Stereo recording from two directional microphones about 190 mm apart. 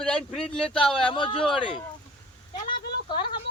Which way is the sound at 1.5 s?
25° left (ahead or behind).